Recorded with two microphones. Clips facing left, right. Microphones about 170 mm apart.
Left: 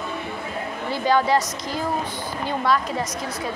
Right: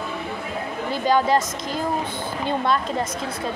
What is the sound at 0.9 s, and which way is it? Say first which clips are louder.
Speech: even; 15° right (ahead or behind).